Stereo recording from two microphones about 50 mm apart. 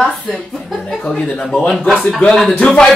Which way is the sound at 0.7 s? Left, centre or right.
Centre.